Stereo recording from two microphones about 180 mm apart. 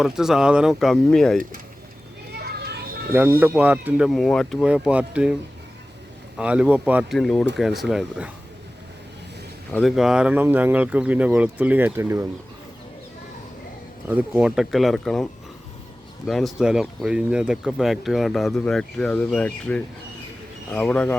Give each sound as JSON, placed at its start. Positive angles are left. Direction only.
{"t": 0.0, "sound": "speech", "side_deg": -5}
{"t": 2.4, "sound": "a sound", "side_deg": -65}
{"t": 3.1, "sound": "speech", "side_deg": -10}
{"t": 9.7, "sound": "speech", "side_deg": 0}
{"t": 14.1, "sound": "speech", "side_deg": -5}